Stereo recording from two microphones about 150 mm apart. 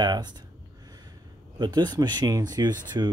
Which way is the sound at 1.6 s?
30° right (ahead or behind).